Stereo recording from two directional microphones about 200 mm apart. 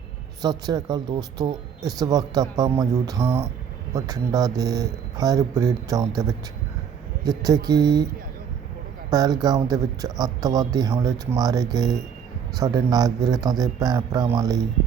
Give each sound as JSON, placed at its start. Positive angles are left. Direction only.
{"t": 0.4, "sound": "speech", "side_deg": -20}
{"t": 9.0, "sound": "speech", "side_deg": -20}